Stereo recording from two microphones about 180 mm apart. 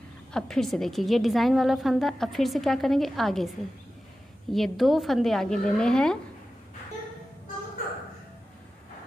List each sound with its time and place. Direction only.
0.3 s a woman's voice: 5° left (ahead or behind)